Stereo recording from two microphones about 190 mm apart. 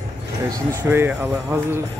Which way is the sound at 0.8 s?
10° right (ahead or behind).